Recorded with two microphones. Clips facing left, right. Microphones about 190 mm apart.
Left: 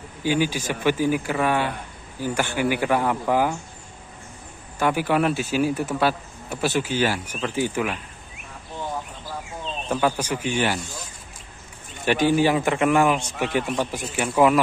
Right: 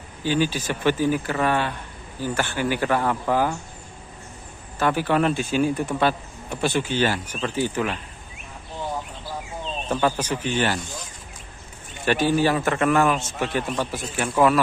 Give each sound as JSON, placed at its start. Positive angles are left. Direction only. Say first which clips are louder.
{"t": 0.2, "sound": "a man's voice", "louder": "even", "side_deg": 10}
{"t": 4.7, "sound": "a man's voice", "louder": "even", "side_deg": 10}
{"t": 9.9, "sound": "a man's voice", "louder": "even", "side_deg": 10}
{"t": 12.0, "sound": "a man's voice", "louder": "left 1 dB", "side_deg": 15}